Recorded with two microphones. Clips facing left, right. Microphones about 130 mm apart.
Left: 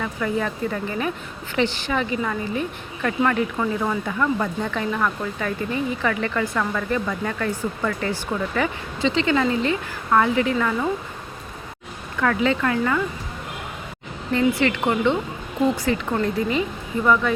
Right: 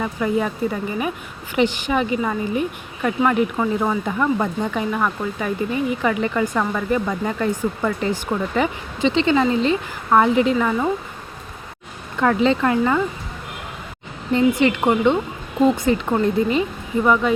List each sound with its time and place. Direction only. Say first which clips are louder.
0.0 s a woman's voice: right 3 dB; 15° right (ahead or behind)
12.2 s speech: right 3 dB; 25° right (ahead or behind)
14.3 s a woman's voice: right 3 dB; 20° right (ahead or behind)